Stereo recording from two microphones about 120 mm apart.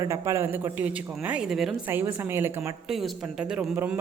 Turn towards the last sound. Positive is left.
turn(degrees=-15)  # may be behind; listen again after turning